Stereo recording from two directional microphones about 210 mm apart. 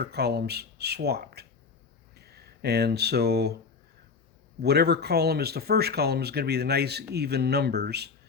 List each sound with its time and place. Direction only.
0.0 s speech: 50° right (ahead or behind)
4.6 s speech: 50° right (ahead or behind)